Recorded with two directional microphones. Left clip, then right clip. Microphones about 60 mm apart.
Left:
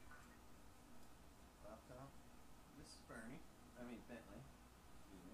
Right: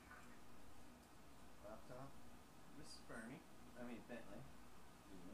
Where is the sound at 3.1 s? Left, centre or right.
Centre.